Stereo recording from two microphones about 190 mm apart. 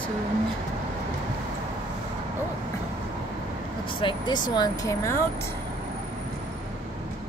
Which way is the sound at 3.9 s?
25° left (ahead or behind).